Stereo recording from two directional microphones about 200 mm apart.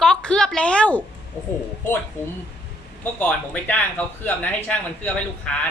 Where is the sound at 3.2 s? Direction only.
10° left (ahead or behind).